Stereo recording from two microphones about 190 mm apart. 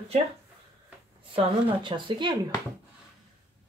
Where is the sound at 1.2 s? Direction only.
25° right (ahead or behind).